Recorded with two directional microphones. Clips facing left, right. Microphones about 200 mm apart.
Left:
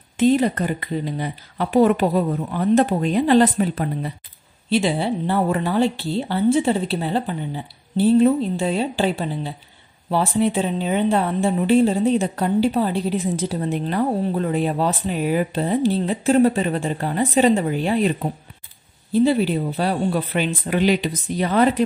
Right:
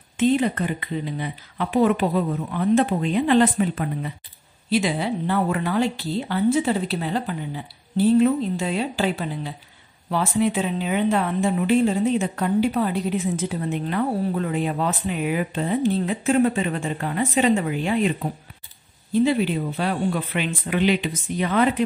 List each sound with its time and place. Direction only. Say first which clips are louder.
0.2 s speech: left 3 dB; 40° left (ahead or behind)